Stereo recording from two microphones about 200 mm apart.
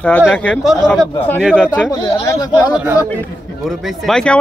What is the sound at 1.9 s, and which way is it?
Speech, 20° left (ahead or behind).